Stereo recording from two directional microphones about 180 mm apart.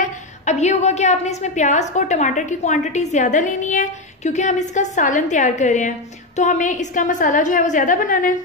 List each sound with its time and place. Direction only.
0.5 s a woman's voice: 40° left (ahead or behind)